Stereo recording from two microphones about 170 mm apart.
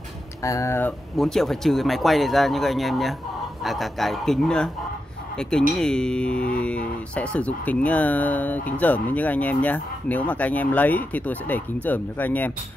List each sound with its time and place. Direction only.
0.4 s speech: 20° left (ahead or behind)
1.1 s speech: centre (ahead or behind)
5.8 s speech: 5° left (ahead or behind)